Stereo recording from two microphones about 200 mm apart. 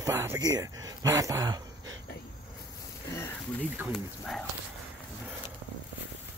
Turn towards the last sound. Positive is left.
turn(degrees=5)  # may be behind; listen again after turning